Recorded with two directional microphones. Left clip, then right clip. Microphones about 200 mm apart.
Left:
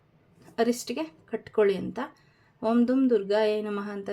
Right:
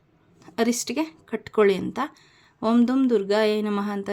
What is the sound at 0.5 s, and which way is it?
Speech, 35° right (ahead or behind).